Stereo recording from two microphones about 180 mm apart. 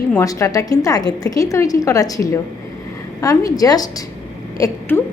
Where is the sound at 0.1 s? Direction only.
15° left (ahead or behind).